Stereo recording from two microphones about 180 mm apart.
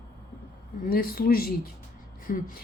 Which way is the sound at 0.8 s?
55° left (ahead or behind).